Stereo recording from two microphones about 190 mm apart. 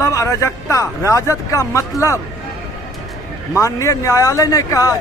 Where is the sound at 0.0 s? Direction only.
15° left (ahead or behind).